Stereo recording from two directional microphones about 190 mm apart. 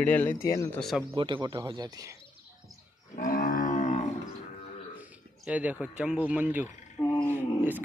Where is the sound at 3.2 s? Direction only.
45° left (ahead or behind).